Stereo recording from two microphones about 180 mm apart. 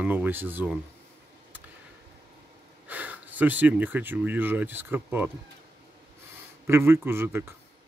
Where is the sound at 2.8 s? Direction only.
10° right (ahead or behind).